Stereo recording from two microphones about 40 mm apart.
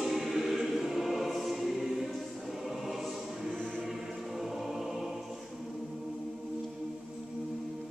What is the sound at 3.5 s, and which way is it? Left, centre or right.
Choir, centre.